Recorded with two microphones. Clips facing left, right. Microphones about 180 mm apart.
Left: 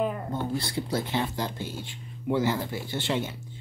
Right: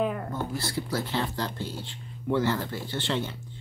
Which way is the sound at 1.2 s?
15° left (ahead or behind).